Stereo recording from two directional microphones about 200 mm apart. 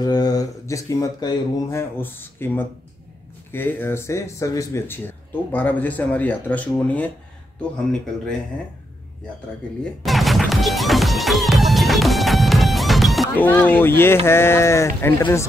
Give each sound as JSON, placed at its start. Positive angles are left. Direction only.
{"t": 0.0, "sound": "speech", "side_deg": 20}
{"t": 10.0, "sound": "music", "side_deg": 0}
{"t": 13.5, "sound": "speech", "side_deg": 10}